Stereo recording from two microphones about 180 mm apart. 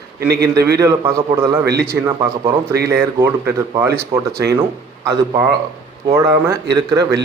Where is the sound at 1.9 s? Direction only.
15° right (ahead or behind).